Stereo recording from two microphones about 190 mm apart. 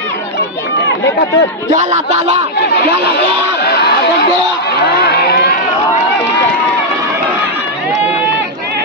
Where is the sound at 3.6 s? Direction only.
60° left (ahead or behind).